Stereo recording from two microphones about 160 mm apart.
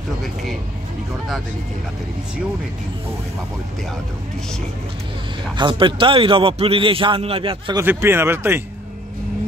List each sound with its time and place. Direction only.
5.6 s a man's voice: 30° right (ahead or behind)
7.7 s speech: 15° right (ahead or behind)